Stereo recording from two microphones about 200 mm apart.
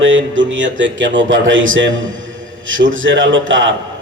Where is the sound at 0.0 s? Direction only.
70° right (ahead or behind).